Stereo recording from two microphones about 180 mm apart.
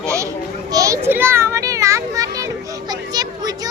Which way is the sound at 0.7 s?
20° right (ahead or behind).